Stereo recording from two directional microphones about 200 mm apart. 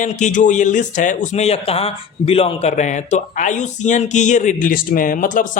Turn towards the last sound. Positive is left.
turn(degrees=40)  # may be behind; listen again after turning